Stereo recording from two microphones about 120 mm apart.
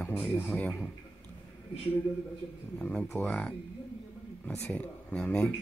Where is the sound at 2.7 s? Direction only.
10° left (ahead or behind).